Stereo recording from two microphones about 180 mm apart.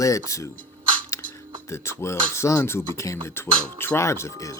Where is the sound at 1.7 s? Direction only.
15° left (ahead or behind).